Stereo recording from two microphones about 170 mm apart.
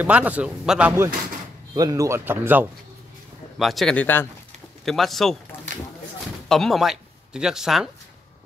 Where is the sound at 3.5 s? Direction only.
Centre (ahead or behind).